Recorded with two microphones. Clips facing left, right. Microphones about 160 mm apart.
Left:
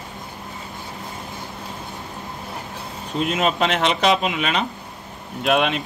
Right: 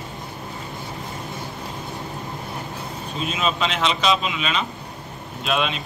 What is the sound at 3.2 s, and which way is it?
A man's voice, 65° left (ahead or behind).